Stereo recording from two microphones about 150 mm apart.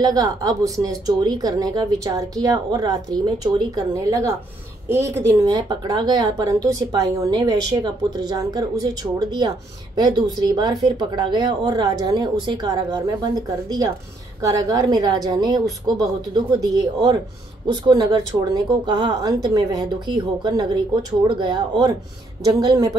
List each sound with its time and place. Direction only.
0.0 s a woman's voice: 25° right (ahead or behind)